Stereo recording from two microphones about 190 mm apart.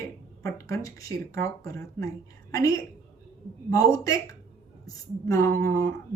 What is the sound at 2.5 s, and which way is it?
Speech, 15° left (ahead or behind).